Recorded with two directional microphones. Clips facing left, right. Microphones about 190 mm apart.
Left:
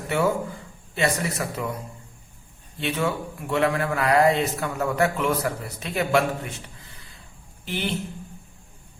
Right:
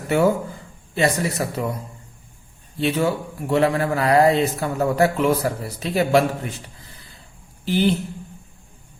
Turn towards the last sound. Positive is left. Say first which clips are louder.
# right 10 dB
turn(degrees=-35)  # may be behind; listen again after turning